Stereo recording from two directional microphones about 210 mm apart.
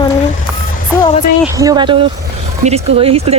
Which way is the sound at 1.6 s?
20° right (ahead or behind).